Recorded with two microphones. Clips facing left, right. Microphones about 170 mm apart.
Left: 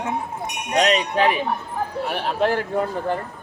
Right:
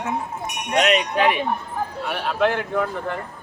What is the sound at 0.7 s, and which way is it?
Speech, 35° left (ahead or behind).